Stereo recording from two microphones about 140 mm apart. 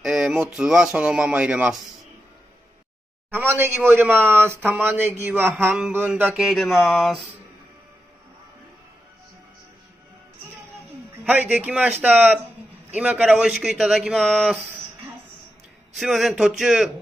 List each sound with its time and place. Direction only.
0.0 s a sound: centre (ahead or behind)
0.6 s speech: 5° right (ahead or behind)
3.3 s speech: 15° right (ahead or behind)
6.4 s speech: centre (ahead or behind)
11.2 s speech: 10° right (ahead or behind)
16.0 s speech: centre (ahead or behind)